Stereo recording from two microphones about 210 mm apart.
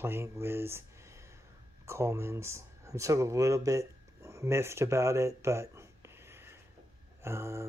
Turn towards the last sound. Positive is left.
turn(degrees=-10)  # may be behind; listen again after turning